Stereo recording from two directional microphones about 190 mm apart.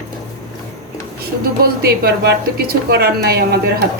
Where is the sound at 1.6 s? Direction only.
55° right (ahead or behind).